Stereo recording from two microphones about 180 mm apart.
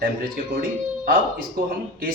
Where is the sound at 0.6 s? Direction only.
50° right (ahead or behind).